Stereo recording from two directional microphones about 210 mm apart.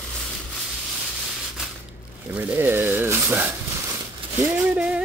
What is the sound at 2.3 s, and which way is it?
Speech, 10° right (ahead or behind).